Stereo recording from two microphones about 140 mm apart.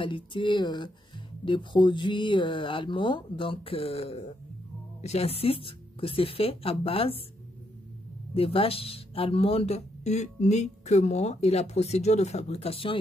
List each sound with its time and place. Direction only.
0.0 s speech: 35° left (ahead or behind)
8.4 s speech: 40° left (ahead or behind)